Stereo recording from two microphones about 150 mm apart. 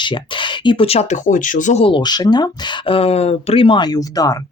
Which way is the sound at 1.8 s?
30° left (ahead or behind).